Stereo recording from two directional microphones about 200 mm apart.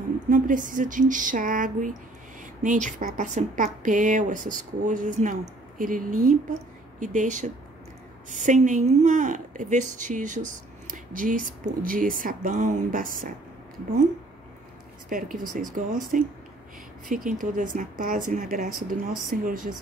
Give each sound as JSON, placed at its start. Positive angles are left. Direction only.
{"t": 0.3, "sound": "a woman's voice", "side_deg": -40}
{"t": 15.0, "sound": "a woman's voice", "side_deg": -45}